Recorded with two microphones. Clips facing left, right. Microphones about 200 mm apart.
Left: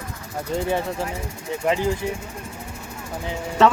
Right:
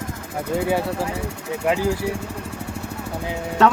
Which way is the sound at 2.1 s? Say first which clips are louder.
Right 3 dB; 70° right (ahead or behind).